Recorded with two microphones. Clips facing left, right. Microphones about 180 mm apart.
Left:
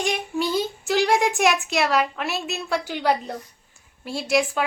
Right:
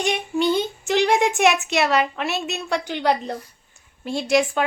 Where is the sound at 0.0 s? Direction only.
Centre (ahead or behind).